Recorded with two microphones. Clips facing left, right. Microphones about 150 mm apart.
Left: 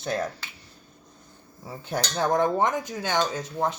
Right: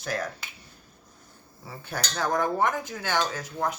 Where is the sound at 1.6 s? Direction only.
15° left (ahead or behind).